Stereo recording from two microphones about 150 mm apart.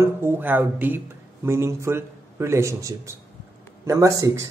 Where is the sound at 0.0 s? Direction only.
15° right (ahead or behind).